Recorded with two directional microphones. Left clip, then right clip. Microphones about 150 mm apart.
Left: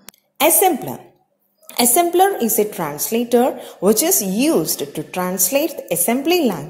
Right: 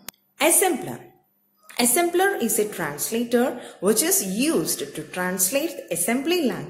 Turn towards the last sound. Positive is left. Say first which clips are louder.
# left 6 dB
turn(degrees=35)  # may be behind; listen again after turning